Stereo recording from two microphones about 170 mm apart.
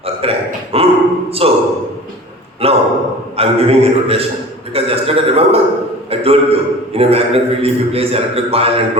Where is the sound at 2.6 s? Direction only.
35° right (ahead or behind).